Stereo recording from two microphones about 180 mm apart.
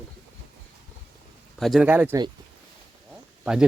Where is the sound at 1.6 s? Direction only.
Centre (ahead or behind).